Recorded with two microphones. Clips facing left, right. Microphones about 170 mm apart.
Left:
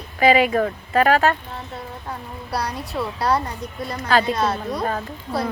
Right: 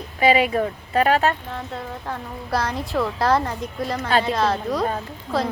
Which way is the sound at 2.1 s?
90° right.